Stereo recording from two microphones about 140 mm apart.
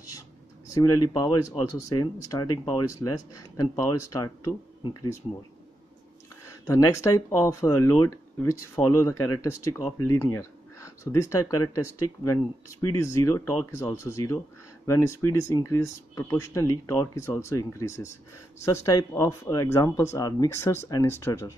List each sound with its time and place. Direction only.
0.7 s speech: 25° left (ahead or behind)
6.7 s speech: 25° left (ahead or behind)